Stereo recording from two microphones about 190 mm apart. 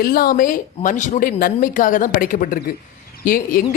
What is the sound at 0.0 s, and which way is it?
Speech, 50° left (ahead or behind).